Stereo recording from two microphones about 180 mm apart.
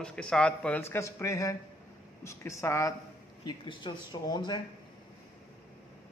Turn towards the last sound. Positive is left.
turn(degrees=25)  # may be behind; listen again after turning